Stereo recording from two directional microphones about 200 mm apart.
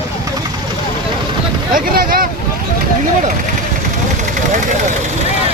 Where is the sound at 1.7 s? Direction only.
50° right (ahead or behind).